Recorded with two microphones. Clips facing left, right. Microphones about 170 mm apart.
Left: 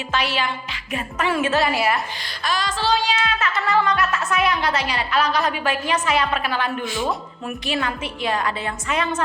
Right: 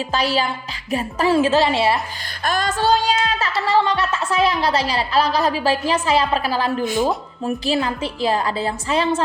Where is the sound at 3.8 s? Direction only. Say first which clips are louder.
Right 2 dB; 30° right (ahead or behind).